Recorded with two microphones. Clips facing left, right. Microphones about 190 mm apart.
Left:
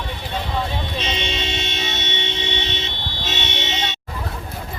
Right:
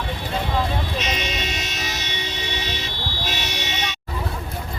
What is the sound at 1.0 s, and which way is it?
Vehicle, 30° left (ahead or behind).